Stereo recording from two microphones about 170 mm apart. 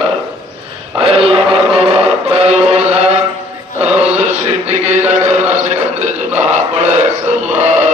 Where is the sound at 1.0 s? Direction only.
35° right (ahead or behind).